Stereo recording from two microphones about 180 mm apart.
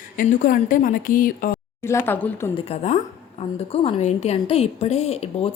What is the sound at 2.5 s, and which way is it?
A woman's voice, 35° left (ahead or behind).